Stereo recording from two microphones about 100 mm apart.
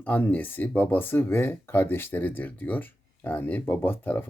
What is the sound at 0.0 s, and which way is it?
Speech, 20° left (ahead or behind).